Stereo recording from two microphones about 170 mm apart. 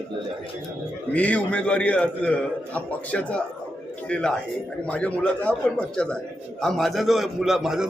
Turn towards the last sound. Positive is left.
turn(degrees=0)  # may be behind; listen again after turning